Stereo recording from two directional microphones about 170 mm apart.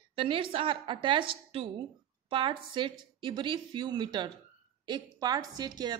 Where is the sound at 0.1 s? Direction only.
30° right (ahead or behind).